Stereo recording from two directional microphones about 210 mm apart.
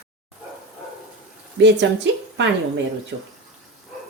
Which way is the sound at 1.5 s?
60° right (ahead or behind).